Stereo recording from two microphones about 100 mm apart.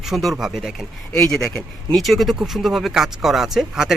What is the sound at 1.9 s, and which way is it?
Speech, centre (ahead or behind).